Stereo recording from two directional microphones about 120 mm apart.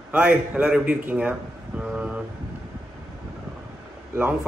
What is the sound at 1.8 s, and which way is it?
Vehicle, 10° right (ahead or behind).